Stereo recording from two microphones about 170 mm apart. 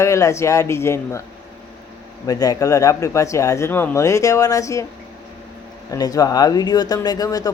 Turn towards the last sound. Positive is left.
turn(degrees=20)  # may be behind; listen again after turning